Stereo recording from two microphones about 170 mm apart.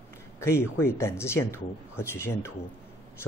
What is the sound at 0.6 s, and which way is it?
Speech, 15° left (ahead or behind).